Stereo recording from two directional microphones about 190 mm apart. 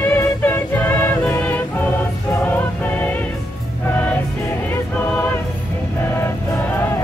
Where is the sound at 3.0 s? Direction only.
10° left (ahead or behind).